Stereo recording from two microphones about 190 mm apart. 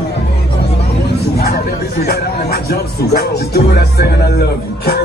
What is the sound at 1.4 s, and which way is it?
Speech, 55° left (ahead or behind).